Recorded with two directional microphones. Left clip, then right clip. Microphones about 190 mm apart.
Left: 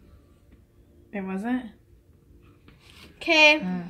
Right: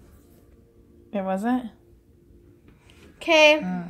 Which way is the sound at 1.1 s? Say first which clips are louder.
Right 5 dB; 30° right (ahead or behind).